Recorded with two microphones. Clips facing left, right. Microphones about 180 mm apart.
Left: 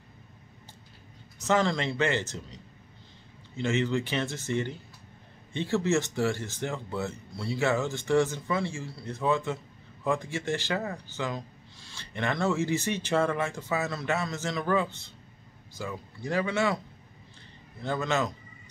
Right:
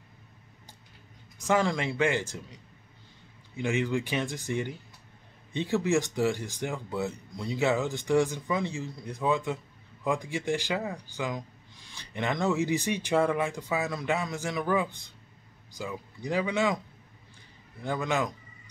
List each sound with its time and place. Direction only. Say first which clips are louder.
1.4 s speech: even; 10° right (ahead or behind)